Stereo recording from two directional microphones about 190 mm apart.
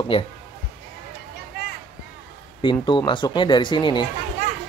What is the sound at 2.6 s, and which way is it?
Speech, 25° left (ahead or behind).